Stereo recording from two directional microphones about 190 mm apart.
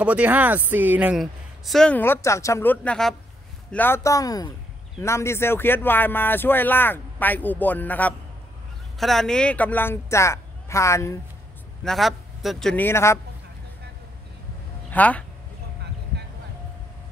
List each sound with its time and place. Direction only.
0.0 s speech: 5° right (ahead or behind); by 11.1 s 15° left (ahead or behind)
11.8 s speech: centre (ahead or behind)
14.9 s speech: 10° left (ahead or behind)